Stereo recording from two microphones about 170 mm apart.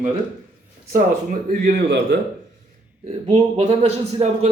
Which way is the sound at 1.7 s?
80° right.